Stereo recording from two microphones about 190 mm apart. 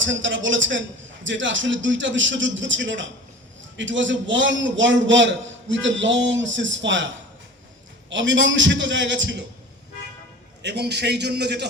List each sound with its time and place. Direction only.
0.0 s a man's voice: 75° right (ahead or behind)
8.1 s a man's voice: 75° right (ahead or behind)
10.6 s a man's voice: 60° right (ahead or behind)